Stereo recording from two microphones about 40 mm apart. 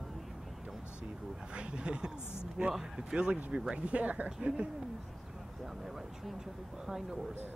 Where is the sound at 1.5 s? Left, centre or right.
Right.